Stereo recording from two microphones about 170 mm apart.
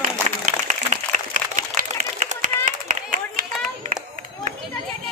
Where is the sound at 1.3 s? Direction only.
50° right (ahead or behind).